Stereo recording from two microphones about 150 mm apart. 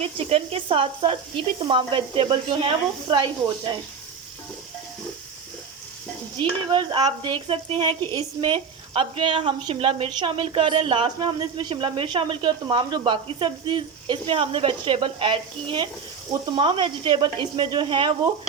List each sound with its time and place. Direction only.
0.0 s speech: 40° right (ahead or behind)
6.4 s speech: 30° right (ahead or behind)